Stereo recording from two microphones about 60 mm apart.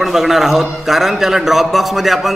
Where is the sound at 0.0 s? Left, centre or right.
Centre.